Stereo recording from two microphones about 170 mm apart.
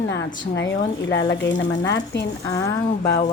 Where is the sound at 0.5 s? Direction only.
90° left.